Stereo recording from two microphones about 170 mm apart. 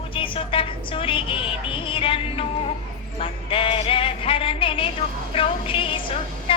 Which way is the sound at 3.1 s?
35° left (ahead or behind).